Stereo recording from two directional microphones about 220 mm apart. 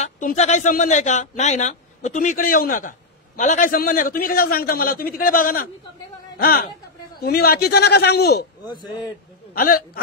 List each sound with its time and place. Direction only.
0.0 s a man's voice: 35° left (ahead or behind)
9.5 s speech: 40° left (ahead or behind)